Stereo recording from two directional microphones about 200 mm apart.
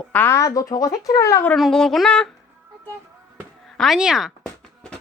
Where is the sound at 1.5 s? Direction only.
Centre (ahead or behind).